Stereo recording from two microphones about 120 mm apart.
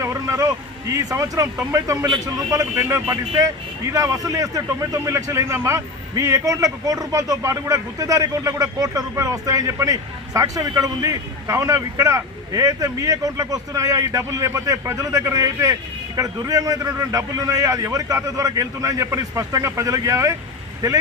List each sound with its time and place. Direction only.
0.0 s speech: 25° right (ahead or behind)
2.7 s speech: 20° right (ahead or behind)